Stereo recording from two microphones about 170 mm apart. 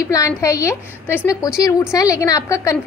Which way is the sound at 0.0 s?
20° left (ahead or behind).